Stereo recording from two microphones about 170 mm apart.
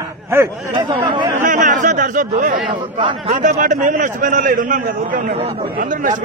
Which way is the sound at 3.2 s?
50° right (ahead or behind).